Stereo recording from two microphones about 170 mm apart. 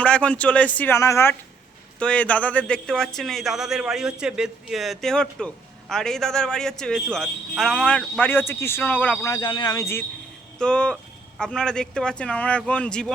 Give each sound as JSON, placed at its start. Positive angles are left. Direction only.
{"t": 0.0, "sound": "speech", "side_deg": 5}
{"t": 9.2, "sound": "speech", "side_deg": 25}